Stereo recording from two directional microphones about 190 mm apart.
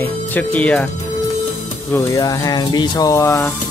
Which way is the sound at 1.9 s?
20° left (ahead or behind).